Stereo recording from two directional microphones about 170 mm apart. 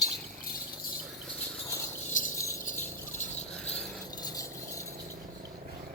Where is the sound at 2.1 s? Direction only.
50° left (ahead or behind).